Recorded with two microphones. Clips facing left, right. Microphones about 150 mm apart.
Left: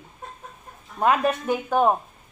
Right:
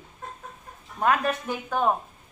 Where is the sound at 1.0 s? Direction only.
15° left (ahead or behind).